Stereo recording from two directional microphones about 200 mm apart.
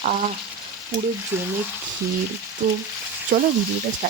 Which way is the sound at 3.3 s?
50° right (ahead or behind).